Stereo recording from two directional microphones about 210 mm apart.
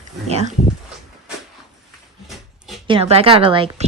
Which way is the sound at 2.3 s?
Centre (ahead or behind).